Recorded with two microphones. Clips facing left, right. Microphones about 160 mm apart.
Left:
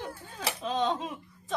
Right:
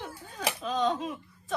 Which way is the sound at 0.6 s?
25° left (ahead or behind).